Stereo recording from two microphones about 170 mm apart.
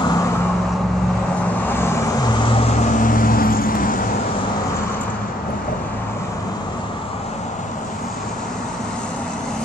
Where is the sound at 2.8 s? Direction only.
55° left (ahead or behind).